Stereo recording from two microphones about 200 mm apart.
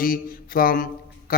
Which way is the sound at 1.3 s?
45° left (ahead or behind).